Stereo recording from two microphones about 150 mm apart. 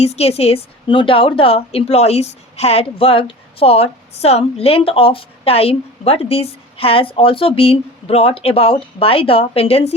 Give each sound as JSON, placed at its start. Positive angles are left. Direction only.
{"t": 0.0, "sound": "a woman's voice", "side_deg": 45}